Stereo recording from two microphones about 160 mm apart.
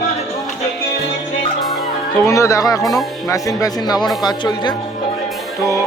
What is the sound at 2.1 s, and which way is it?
Speech, 20° left (ahead or behind).